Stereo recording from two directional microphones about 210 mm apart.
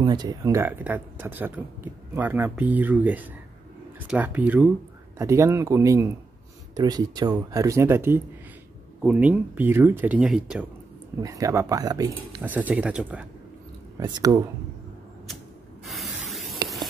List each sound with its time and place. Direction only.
0.0 s speech: 20° right (ahead or behind); by 10.7 s 5° right (ahead or behind)
11.1 s speech: 15° right (ahead or behind)
13.9 s speech: 20° right (ahead or behind)
15.9 s spray: centre (ahead or behind)
16.6 s a sound: centre (ahead or behind)